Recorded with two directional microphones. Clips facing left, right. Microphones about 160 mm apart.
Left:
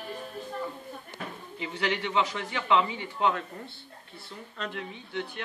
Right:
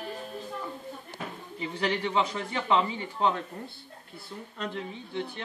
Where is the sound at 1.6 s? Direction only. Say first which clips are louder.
Right 1 dB; 30° right (ahead or behind).